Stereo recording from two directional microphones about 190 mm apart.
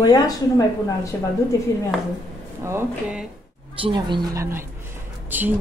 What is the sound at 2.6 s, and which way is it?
Speech, 10° right (ahead or behind).